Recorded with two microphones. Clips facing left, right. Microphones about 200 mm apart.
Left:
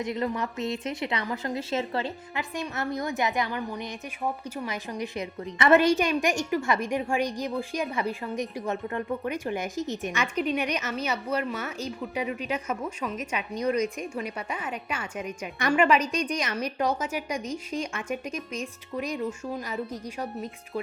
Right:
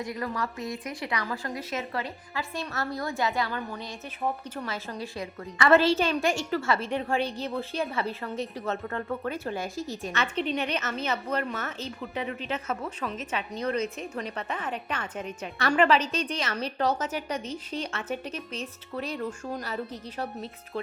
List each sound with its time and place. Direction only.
0.0 s a woman's voice: 20° left (ahead or behind)